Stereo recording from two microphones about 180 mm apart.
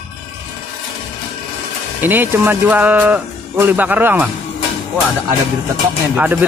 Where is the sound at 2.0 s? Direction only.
10° right (ahead or behind).